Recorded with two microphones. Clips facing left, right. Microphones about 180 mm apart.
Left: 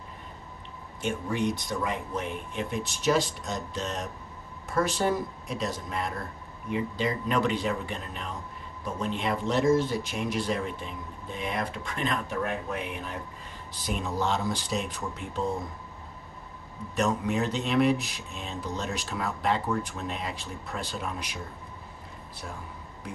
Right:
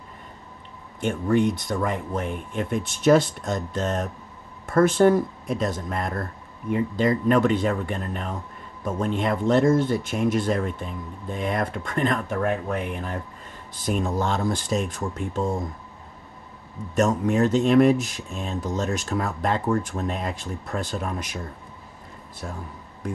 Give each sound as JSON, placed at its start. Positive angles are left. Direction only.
{"t": 1.0, "sound": "speech", "side_deg": -55}
{"t": 16.9, "sound": "speech", "side_deg": -45}